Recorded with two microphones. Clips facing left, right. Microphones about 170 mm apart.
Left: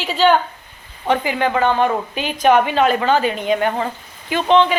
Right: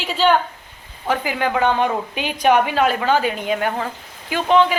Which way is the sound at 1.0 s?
5° right (ahead or behind).